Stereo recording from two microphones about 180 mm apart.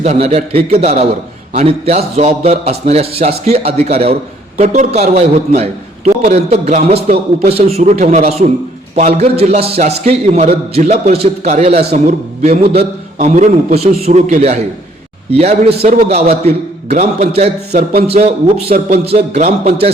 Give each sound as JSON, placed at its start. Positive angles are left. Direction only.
{"t": 0.0, "sound": "a man's voice", "side_deg": -40}